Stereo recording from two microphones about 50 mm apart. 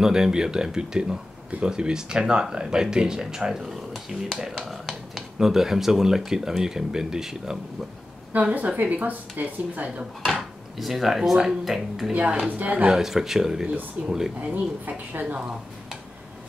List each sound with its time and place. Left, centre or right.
0.0 s speech: centre
8.5 s a woman's voice: right
10.2 s dishes: centre
10.9 s speech: centre
12.1 s a woman's voice: right
12.8 s speech: centre
14.4 s a woman's voice: right